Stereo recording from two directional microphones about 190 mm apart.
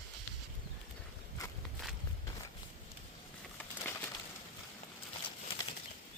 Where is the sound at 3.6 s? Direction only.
10° left (ahead or behind).